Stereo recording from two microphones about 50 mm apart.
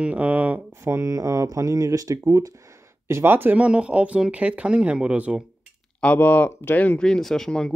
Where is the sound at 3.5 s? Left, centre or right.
Right.